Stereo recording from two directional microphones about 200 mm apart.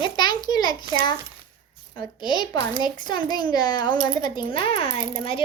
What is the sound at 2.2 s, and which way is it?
Speech, 20° left (ahead or behind).